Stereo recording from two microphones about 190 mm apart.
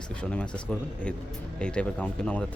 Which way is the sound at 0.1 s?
5° left (ahead or behind).